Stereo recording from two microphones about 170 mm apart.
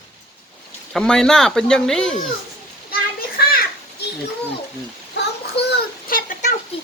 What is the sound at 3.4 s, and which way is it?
Children playing, 70° left (ahead or behind).